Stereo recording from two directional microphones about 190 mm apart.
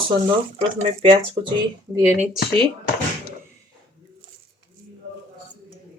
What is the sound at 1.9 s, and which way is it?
Speech, 15° right (ahead or behind).